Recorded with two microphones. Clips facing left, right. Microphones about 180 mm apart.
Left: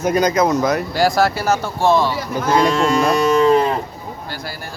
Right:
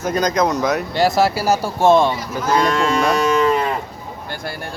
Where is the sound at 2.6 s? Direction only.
30° left (ahead or behind).